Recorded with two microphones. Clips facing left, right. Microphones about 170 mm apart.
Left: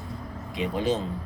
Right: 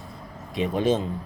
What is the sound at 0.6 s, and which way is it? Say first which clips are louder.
Speech: right 4 dB; 25° right (ahead or behind).